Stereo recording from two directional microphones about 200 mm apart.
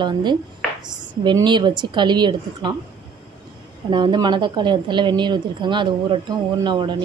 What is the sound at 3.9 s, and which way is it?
Speech, 25° right (ahead or behind).